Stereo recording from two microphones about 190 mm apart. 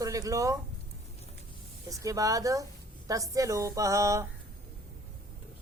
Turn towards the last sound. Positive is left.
turn(degrees=-15)  # may be behind; listen again after turning